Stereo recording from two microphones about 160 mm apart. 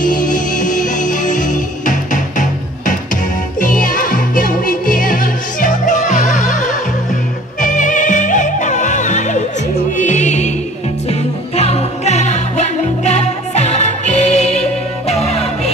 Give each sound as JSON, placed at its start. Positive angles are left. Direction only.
{"t": 0.0, "sound": "music", "side_deg": 60}